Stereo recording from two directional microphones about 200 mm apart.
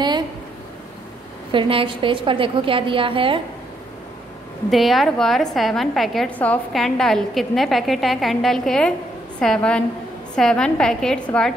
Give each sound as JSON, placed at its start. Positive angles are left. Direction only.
{"t": 1.5, "sound": "a woman's voice", "side_deg": -25}
{"t": 4.6, "sound": "a woman's voice", "side_deg": 0}